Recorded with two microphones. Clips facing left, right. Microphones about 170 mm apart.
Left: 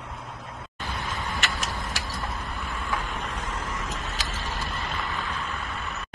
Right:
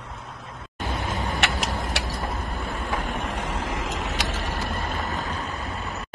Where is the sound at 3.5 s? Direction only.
90° right; by 6.0 s 35° right (ahead or behind).